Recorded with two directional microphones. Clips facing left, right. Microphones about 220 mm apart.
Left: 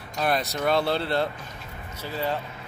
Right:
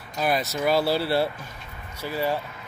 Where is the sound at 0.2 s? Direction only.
Centre (ahead or behind).